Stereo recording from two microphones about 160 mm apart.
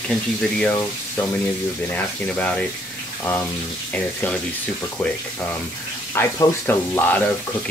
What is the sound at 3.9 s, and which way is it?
Speech, 10° left (ahead or behind).